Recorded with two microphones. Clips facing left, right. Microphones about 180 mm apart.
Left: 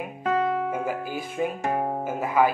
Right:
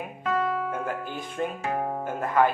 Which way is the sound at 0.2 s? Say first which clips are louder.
Left 3 dB; 25° left (ahead or behind).